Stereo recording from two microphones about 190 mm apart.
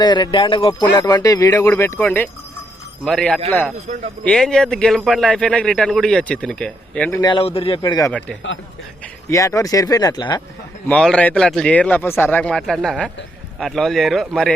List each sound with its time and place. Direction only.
0.0 s speech: 25° left (ahead or behind); by 7.2 s 5° left (ahead or behind)
7.2 s speech: 25° left (ahead or behind)
9.3 s speech: 15° left (ahead or behind)
10.8 s speech: 5° left (ahead or behind)